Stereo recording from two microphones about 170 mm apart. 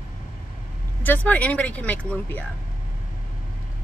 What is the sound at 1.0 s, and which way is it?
Speech, 10° left (ahead or behind).